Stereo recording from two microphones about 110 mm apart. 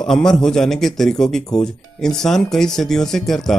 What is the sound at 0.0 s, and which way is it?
A man's voice, 5° left (ahead or behind).